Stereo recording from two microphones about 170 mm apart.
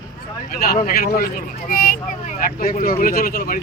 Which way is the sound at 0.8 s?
60° left (ahead or behind).